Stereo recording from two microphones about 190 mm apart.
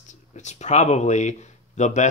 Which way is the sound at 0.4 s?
35° left (ahead or behind).